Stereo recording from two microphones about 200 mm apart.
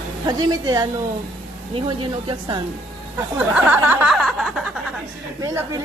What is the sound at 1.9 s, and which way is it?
Speech, 20° right (ahead or behind).